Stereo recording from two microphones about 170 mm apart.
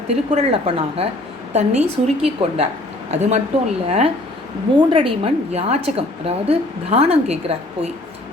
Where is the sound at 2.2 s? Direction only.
35° right (ahead or behind).